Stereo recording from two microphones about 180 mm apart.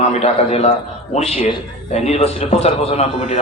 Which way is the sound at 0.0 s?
40° left (ahead or behind).